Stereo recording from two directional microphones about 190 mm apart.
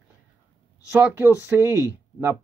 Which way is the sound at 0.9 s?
10° right (ahead or behind).